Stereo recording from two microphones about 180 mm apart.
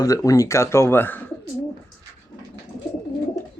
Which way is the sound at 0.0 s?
20° left (ahead or behind).